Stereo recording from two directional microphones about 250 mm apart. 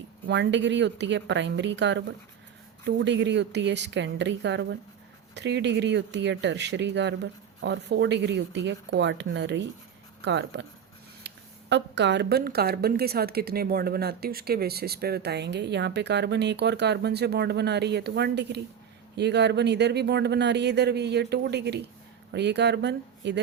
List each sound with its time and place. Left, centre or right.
0.3 s speech: right
11.3 s a sound: right
11.7 s a woman's voice: right